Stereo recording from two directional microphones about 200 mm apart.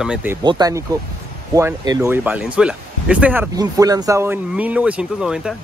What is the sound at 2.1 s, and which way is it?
Speech, 5° right (ahead or behind).